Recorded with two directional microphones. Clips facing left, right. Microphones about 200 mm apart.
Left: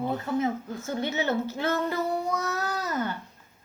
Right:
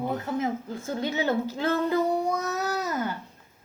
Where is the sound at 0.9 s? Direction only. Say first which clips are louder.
Right 1 dB; 10° right (ahead or behind).